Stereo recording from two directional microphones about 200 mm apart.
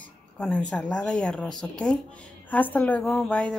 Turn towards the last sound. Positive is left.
turn(degrees=5)  # may be behind; listen again after turning